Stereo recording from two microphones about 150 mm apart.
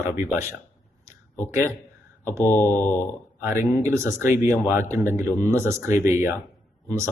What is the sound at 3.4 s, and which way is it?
Speech, 20° right (ahead or behind).